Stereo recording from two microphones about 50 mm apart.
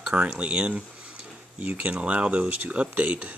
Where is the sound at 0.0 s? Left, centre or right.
Right.